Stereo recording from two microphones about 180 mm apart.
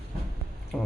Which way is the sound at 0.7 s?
Centre (ahead or behind).